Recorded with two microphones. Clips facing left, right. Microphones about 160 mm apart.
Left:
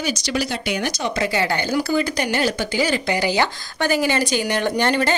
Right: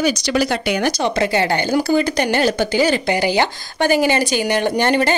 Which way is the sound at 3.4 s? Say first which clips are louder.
Right 3 dB; 20° right (ahead or behind).